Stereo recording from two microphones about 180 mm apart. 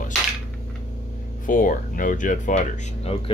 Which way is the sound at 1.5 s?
50° left (ahead or behind).